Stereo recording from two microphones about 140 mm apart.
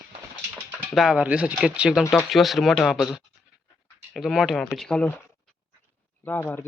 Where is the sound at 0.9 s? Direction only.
5° right (ahead or behind).